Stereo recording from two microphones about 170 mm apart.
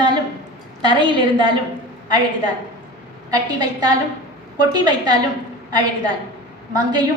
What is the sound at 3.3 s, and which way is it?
A woman's voice, 25° right (ahead or behind).